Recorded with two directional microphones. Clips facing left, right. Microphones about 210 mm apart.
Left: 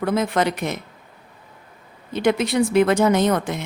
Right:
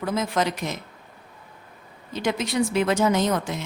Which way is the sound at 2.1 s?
60° left (ahead or behind).